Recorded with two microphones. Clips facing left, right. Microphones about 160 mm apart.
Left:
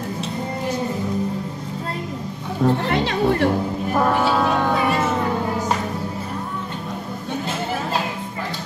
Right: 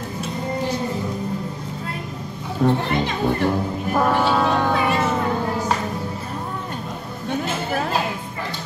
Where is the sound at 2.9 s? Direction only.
70° left (ahead or behind).